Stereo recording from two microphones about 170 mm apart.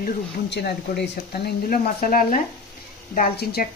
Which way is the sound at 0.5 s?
75° left (ahead or behind).